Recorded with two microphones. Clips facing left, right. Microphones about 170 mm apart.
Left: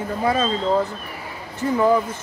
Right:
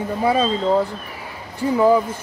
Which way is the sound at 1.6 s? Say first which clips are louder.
Right 2 dB; 10° right (ahead or behind).